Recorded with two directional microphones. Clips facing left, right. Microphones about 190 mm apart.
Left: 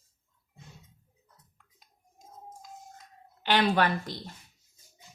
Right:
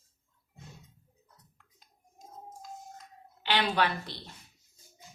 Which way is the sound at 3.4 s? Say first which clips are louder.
Left 4 dB; 50° left (ahead or behind).